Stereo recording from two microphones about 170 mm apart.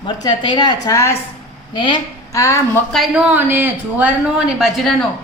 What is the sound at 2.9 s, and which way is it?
A woman's voice, 5° right (ahead or behind).